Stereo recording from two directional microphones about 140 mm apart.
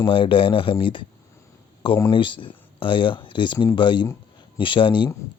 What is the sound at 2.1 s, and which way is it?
Speech, 35° left (ahead or behind).